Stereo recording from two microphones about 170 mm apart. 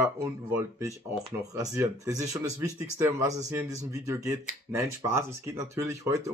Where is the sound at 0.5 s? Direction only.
15° right (ahead or behind).